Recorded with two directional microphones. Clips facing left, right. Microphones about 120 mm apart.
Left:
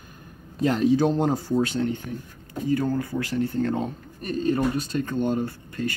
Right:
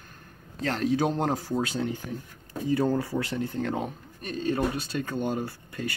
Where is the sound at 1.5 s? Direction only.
10° right (ahead or behind).